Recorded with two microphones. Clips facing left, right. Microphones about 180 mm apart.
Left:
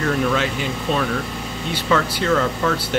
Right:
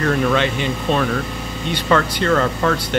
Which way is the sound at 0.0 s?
Centre (ahead or behind).